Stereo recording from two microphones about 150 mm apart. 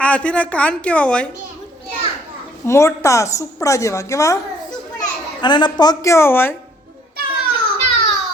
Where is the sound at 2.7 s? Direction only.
20° left (ahead or behind).